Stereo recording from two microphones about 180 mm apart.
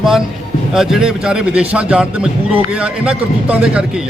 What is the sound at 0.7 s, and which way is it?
A man's voice, centre (ahead or behind).